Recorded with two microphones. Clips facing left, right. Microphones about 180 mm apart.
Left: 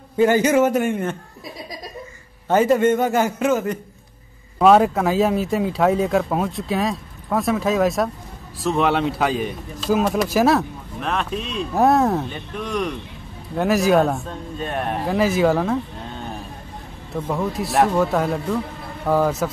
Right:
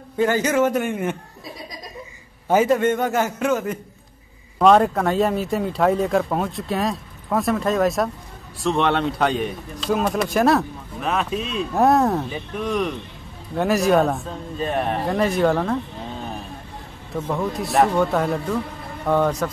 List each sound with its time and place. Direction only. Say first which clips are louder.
0.2 s a man's voice: left 3 dB; 10° left (ahead or behind)
2.4 s a man's voice: even; 10° right (ahead or behind)
2.7 s a man's voice: left 2 dB; centre (ahead or behind)